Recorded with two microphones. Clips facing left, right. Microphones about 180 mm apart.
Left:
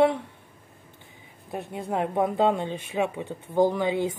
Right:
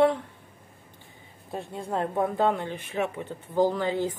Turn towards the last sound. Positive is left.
turn(degrees=15)  # may be behind; listen again after turning